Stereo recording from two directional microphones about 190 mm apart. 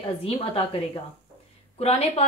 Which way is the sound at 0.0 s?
30° left (ahead or behind).